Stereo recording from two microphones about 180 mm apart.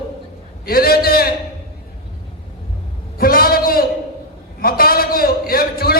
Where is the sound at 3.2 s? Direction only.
55° left (ahead or behind).